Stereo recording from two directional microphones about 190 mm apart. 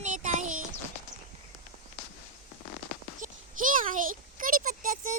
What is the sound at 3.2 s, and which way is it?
A child's voice, 45° right (ahead or behind).